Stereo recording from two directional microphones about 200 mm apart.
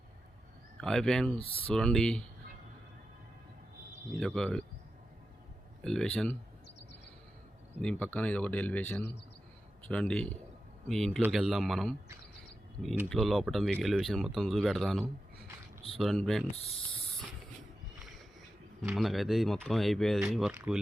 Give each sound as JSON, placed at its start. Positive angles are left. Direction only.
{"t": 0.8, "sound": "speech", "side_deg": 0}
{"t": 1.4, "sound": "speech", "side_deg": 30}
{"t": 1.7, "sound": "speech", "side_deg": 5}
{"t": 4.2, "sound": "speech", "side_deg": 0}
{"t": 5.8, "sound": "speech", "side_deg": 5}
{"t": 7.8, "sound": "speech", "side_deg": 5}
{"t": 13.1, "sound": "speech", "side_deg": 0}
{"t": 18.9, "sound": "speech", "side_deg": 0}